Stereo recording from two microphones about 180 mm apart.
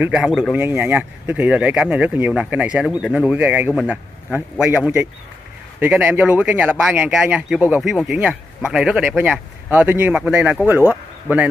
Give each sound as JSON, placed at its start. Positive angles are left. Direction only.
{"t": 0.0, "sound": "speech", "side_deg": -5}
{"t": 0.6, "sound": "speech", "side_deg": -10}